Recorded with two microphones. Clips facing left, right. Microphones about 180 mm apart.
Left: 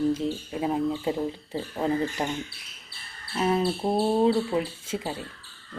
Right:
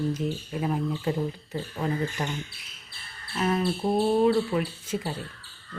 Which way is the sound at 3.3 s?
20° left (ahead or behind).